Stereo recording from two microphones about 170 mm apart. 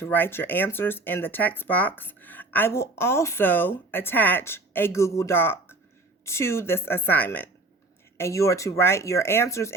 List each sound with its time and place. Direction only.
0.0 s speech: 10° left (ahead or behind)